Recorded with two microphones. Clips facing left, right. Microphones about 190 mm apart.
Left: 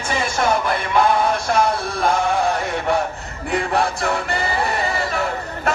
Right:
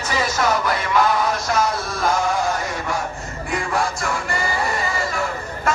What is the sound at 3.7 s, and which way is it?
Music, 60° left (ahead or behind).